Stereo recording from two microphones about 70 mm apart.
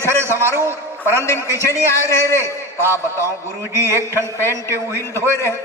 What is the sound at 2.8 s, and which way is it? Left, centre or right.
Speech, right.